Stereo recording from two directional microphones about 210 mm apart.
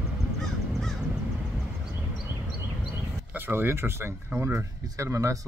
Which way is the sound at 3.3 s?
10° right (ahead or behind).